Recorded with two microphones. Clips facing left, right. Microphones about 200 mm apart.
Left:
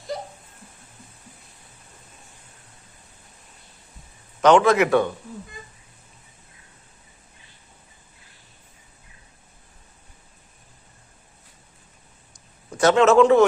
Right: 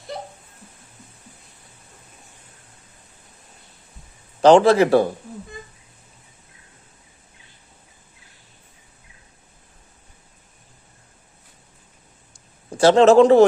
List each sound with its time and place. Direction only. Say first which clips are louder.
4.4 s a man's voice: right 3 dB; 30° right (ahead or behind)
12.7 s a man's voice: right 3 dB; 30° right (ahead or behind)